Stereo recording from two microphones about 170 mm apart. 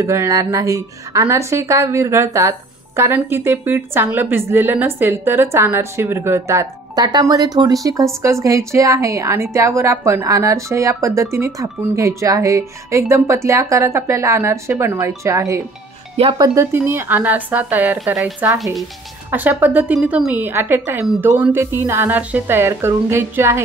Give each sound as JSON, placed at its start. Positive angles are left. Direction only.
{"t": 0.0, "sound": "a woman's voice", "side_deg": -15}
{"t": 16.2, "sound": "speech", "side_deg": -30}
{"t": 16.5, "sound": "a woman's voice", "side_deg": -15}